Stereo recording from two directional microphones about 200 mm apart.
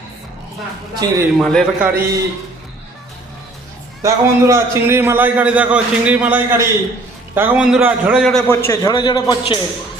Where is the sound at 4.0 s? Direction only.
15° right (ahead or behind); by 9.5 s 20° left (ahead or behind).